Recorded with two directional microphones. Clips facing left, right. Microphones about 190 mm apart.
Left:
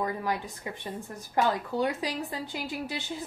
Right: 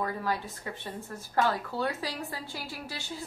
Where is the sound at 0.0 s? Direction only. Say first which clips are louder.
Left 1 dB; 15° left (ahead or behind).